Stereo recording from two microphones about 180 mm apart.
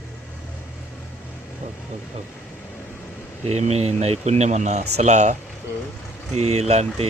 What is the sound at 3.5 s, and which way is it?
Speech, 35° right (ahead or behind).